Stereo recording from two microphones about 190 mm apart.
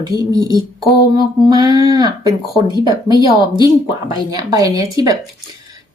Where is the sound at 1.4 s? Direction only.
20° right (ahead or behind).